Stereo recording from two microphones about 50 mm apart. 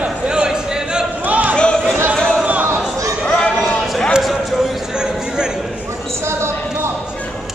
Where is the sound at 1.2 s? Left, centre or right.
Right.